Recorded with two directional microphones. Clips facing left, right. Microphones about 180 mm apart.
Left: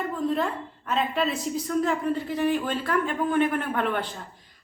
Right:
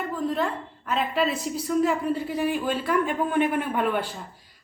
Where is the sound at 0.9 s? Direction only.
Centre (ahead or behind).